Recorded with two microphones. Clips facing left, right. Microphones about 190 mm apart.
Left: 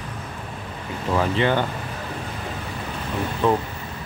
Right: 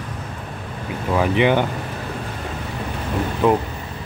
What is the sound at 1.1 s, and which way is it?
Speech, 15° right (ahead or behind).